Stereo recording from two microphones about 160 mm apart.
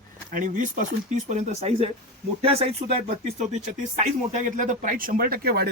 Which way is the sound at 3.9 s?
50° right (ahead or behind).